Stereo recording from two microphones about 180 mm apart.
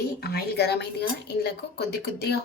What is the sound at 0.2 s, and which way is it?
A woman's voice, 60° left (ahead or behind).